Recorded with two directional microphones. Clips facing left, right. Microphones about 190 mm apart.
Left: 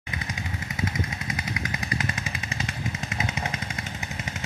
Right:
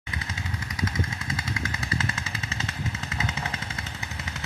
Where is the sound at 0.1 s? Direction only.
20° left (ahead or behind).